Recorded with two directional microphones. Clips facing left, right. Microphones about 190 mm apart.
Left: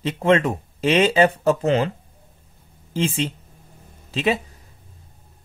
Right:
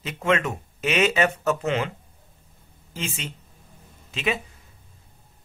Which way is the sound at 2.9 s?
30° left (ahead or behind).